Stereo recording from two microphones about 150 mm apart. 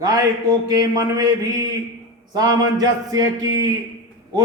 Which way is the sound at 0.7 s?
25° right (ahead or behind).